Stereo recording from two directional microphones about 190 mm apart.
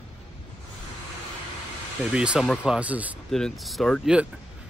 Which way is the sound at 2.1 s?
5° right (ahead or behind).